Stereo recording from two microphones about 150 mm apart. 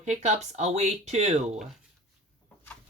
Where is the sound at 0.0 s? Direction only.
50° right (ahead or behind).